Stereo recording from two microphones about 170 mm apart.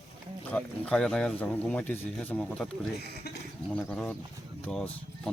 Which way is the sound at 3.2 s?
70° left (ahead or behind).